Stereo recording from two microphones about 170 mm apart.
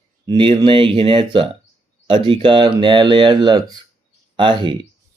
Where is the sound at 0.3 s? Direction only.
30° right (ahead or behind).